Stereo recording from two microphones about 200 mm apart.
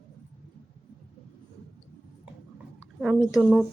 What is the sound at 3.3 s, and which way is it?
Speech, centre (ahead or behind).